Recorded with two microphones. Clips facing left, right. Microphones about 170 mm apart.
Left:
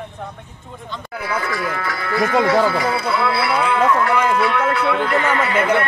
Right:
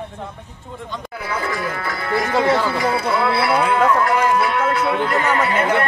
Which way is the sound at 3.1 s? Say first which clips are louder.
Right 2 dB; 40° right (ahead or behind).